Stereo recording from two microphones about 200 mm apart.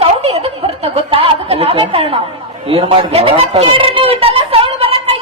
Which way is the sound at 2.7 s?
30° right (ahead or behind).